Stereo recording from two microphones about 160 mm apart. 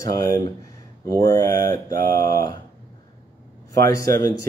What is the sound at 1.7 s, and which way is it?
Mantra, 60° right (ahead or behind).